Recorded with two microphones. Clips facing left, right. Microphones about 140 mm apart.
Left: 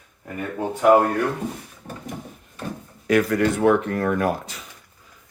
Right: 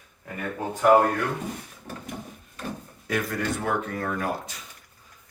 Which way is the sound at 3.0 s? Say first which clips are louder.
Left 9 dB; 85° left.